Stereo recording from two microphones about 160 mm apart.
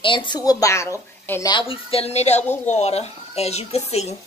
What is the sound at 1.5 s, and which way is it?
A woman's voice, 35° left (ahead or behind).